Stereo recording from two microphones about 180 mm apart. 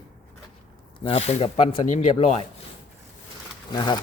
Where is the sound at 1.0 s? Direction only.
35° left (ahead or behind).